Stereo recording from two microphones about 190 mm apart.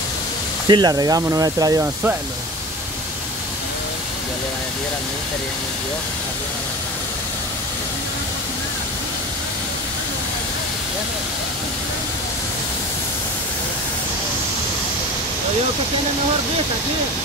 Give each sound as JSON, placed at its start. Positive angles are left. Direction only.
{"t": 0.7, "sound": "speech", "side_deg": -20}